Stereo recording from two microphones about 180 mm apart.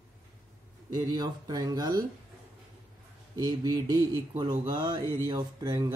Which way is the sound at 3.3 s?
20° right (ahead or behind).